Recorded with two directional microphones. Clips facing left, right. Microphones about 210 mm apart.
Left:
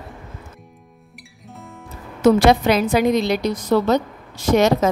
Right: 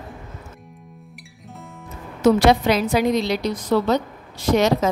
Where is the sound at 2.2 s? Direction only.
55° left (ahead or behind).